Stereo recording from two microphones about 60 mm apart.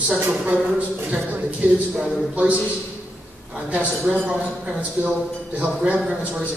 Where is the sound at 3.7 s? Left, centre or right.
Right.